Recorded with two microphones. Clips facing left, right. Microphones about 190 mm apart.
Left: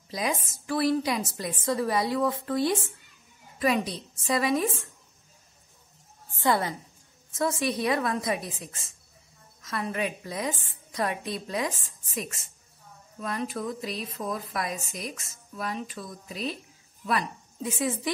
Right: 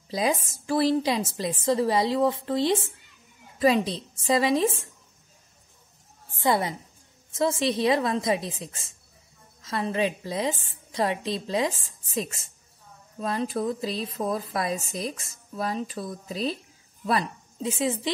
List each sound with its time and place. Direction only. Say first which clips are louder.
0.1 s a woman's voice: right 4 dB; 30° right (ahead or behind)
6.4 s a woman's voice: right 1 dB; 20° right (ahead or behind)